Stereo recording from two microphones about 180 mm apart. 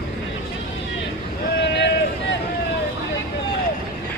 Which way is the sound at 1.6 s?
80° left.